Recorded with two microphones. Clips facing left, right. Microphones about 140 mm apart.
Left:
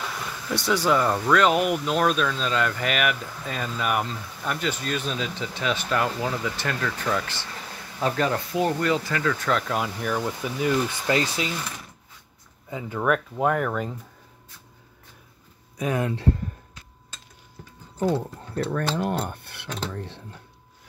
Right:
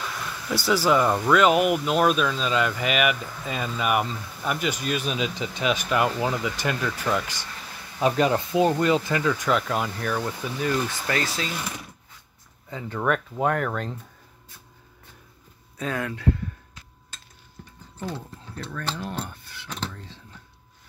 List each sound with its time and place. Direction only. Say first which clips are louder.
0.5 s speech: right 1 dB; centre (ahead or behind); by 11.5 s 15° left (ahead or behind)
12.6 s speech: left 1 dB; 15° left (ahead or behind)
15.8 s speech: left 4 dB; 20° left (ahead or behind)
18.1 s speech: left 10 dB; 65° left (ahead or behind)